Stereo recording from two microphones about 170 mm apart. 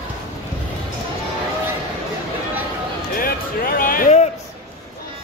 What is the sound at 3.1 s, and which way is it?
Music, 60° left (ahead or behind).